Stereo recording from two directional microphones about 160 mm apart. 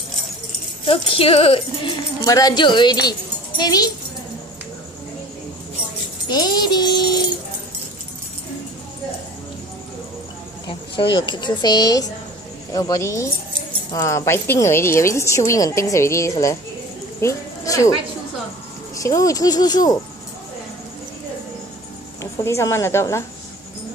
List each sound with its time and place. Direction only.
0.8 s speech: 35° left (ahead or behind)
2.2 s a child's voice: 20° left (ahead or behind)
6.2 s a child's voice: 25° left (ahead or behind)
10.7 s a child's voice: 30° left (ahead or behind)
17.2 s a sound: 20° left (ahead or behind)
18.9 s a child's voice: 20° left (ahead or behind)
22.2 s a woman's voice: 15° left (ahead or behind)